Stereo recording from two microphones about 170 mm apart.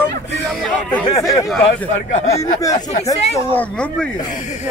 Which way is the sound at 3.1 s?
40° left (ahead or behind).